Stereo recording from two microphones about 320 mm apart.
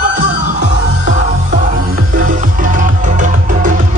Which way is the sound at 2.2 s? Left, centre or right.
Right.